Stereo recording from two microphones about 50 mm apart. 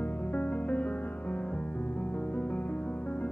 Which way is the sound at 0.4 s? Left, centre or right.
Left.